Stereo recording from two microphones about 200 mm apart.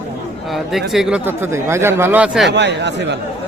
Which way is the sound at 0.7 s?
Centre (ahead or behind).